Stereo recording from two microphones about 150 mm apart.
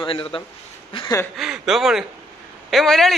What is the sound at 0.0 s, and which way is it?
Speech, 35° left (ahead or behind).